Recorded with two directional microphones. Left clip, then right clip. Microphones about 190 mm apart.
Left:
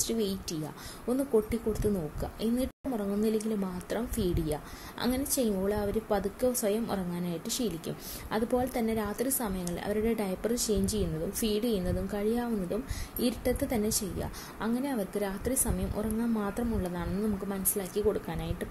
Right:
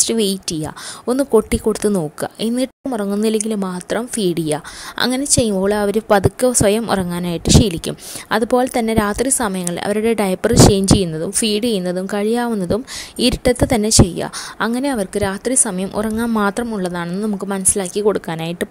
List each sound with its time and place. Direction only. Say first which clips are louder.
0.0 s speech: right 14 dB; 45° right (ahead or behind)